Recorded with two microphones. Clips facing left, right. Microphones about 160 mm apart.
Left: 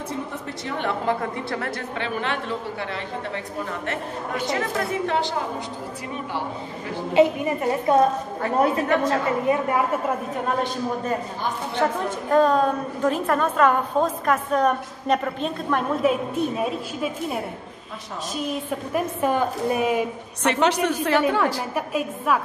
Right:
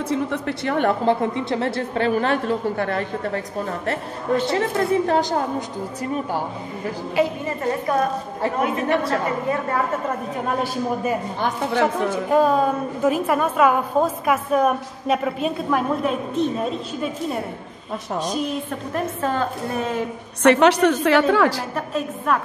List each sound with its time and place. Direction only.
0.1 s a woman's voice: 65° right (ahead or behind)
1.0 s a woman's voice: 25° right (ahead or behind)
2.0 s a woman's voice: 40° right (ahead or behind)
4.5 s a woman's voice: 35° right (ahead or behind)
7.2 s a woman's voice: 20° left (ahead or behind)
8.5 s a woman's voice: 35° left (ahead or behind)
9.5 s a woman's voice: 15° left (ahead or behind)
10.3 s a woman's voice: 5° right (ahead or behind)
12.3 s a woman's voice: 10° right (ahead or behind); by 20.1 s 10° left (ahead or behind)
20.4 s a woman's voice: 65° right (ahead or behind); by 21.6 s 90° right
21.7 s a woman's voice: 10° left (ahead or behind)